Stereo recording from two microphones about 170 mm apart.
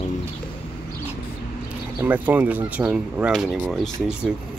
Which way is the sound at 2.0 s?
10° right (ahead or behind).